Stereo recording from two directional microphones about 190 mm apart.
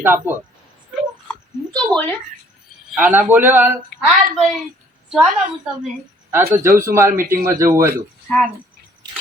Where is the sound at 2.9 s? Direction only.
10° right (ahead or behind).